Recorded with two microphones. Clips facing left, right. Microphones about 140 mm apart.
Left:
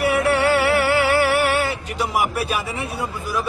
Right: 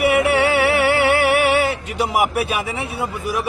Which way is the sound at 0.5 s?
65° right (ahead or behind).